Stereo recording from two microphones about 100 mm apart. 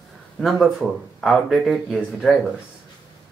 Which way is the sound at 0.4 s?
Centre (ahead or behind).